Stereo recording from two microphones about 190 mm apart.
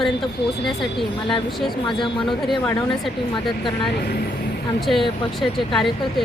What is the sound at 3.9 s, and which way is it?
Speech, 55° left (ahead or behind).